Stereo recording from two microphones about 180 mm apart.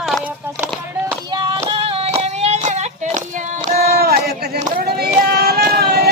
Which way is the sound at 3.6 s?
55° right (ahead or behind).